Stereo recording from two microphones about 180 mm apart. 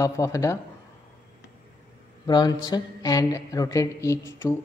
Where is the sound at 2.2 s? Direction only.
20° left (ahead or behind).